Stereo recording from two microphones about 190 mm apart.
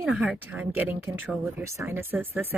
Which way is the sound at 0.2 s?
10° right (ahead or behind).